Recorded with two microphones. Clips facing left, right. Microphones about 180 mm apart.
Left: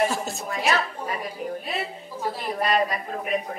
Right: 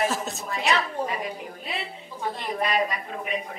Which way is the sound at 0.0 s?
Centre (ahead or behind).